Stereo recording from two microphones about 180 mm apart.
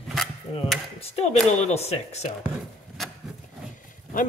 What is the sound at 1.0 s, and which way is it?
Speech, 35° left (ahead or behind).